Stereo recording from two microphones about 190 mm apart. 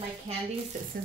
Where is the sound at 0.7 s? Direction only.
40° right (ahead or behind).